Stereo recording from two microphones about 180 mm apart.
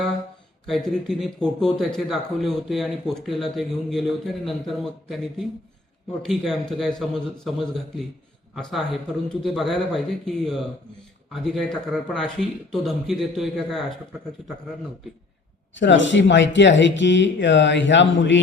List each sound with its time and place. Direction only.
0.7 s speech: centre (ahead or behind)
15.7 s speech: 90° left